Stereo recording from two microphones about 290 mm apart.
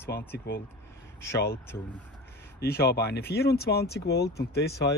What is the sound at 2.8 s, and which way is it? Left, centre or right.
Speech, left.